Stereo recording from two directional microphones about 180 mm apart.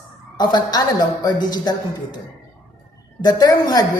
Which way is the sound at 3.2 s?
20° left (ahead or behind).